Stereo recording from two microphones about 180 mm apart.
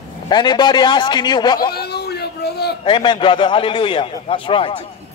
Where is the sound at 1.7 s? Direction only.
60° left (ahead or behind).